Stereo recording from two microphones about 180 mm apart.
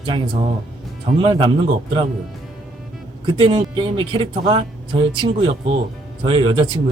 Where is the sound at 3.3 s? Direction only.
30° right (ahead or behind).